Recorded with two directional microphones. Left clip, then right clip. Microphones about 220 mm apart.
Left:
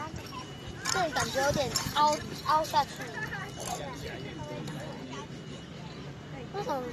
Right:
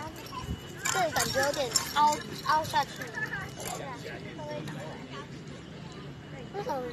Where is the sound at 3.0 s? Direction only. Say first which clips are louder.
Right 2 dB; 45° left (ahead or behind).